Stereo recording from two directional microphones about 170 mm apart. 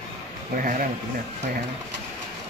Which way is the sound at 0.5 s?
55° right (ahead or behind).